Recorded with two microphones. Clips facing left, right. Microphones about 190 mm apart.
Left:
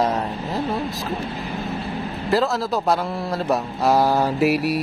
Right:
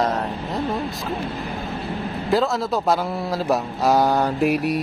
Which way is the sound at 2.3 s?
Centre (ahead or behind).